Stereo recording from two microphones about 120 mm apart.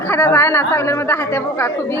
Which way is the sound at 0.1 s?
20° left (ahead or behind).